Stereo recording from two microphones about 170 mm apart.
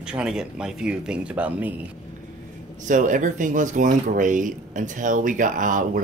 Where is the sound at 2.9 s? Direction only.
50° right (ahead or behind).